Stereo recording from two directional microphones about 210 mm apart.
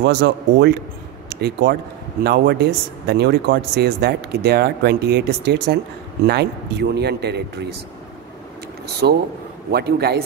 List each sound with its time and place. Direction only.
0.0 s speech: 55° right (ahead or behind)
9.0 s speech: 50° right (ahead or behind)